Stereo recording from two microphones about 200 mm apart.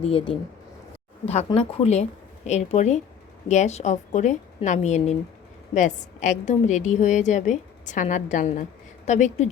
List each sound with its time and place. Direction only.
0.0 s a woman's voice: 30° left (ahead or behind)